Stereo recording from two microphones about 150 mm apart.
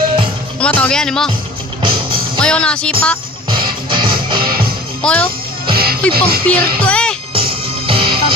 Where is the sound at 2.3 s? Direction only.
5° left (ahead or behind).